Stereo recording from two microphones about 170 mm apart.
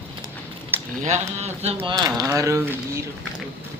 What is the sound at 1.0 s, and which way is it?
Speech, 40° right (ahead or behind).